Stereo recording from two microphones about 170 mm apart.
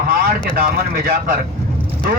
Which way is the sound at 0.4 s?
60° right (ahead or behind).